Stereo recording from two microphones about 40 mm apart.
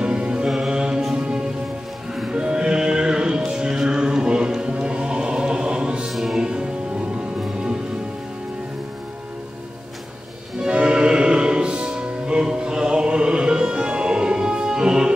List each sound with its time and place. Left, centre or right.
0.0 s mantra: right
1.1 s music: right
6.0 s music: centre
6.4 s music: right
10.6 s music: right